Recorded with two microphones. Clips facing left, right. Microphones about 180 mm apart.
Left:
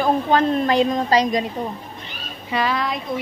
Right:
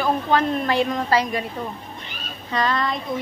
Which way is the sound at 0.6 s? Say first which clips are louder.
Left 3 dB; 20° left (ahead or behind).